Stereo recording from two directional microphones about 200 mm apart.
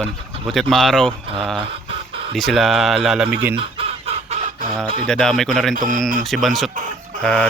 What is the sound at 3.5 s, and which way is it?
Chicken, 25° right (ahead or behind).